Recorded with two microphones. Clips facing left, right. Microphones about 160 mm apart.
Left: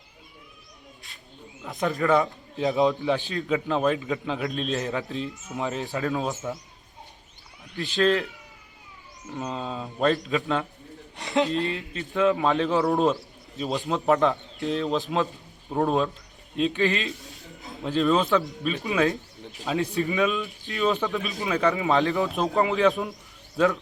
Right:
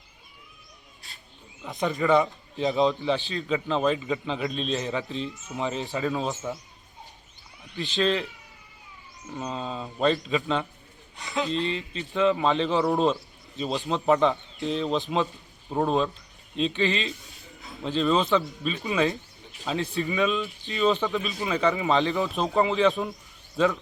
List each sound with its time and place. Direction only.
1.6 s a man's voice: centre (ahead or behind)
7.8 s a man's voice: centre (ahead or behind)
17.4 s a sound: 20° left (ahead or behind)
17.8 s a man's voice: 5° left (ahead or behind)